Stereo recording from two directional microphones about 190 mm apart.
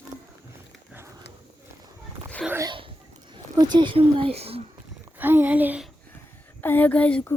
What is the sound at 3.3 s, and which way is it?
Speech, 25° right (ahead or behind).